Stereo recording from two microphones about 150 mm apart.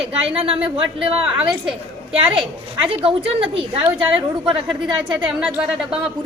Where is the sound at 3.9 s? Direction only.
10° right (ahead or behind).